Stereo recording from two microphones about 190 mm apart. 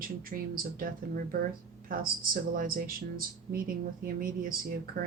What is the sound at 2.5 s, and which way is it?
Speech, 50° right (ahead or behind).